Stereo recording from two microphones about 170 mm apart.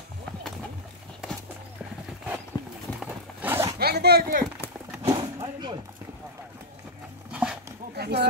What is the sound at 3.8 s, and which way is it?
Speech, 70° right (ahead or behind).